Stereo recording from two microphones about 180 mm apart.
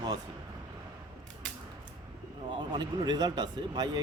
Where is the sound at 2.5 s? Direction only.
25° right (ahead or behind).